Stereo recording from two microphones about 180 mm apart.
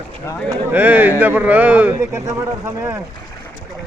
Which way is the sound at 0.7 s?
10° right (ahead or behind).